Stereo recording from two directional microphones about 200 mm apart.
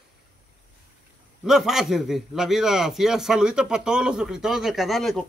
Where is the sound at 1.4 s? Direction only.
Centre (ahead or behind).